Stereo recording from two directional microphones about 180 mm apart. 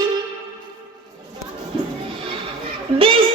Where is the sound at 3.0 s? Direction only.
30° right (ahead or behind).